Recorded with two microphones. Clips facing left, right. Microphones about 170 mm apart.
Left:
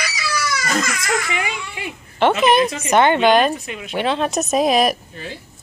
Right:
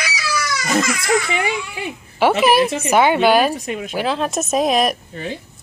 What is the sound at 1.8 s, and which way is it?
A woman's voice, 5° right (ahead or behind).